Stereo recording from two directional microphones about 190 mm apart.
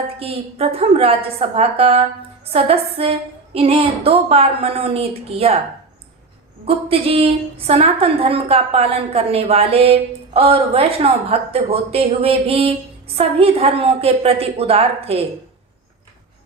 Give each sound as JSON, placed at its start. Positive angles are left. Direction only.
{"t": 0.2, "sound": "a woman's voice", "side_deg": -30}
{"t": 6.7, "sound": "a woman's voice", "side_deg": -30}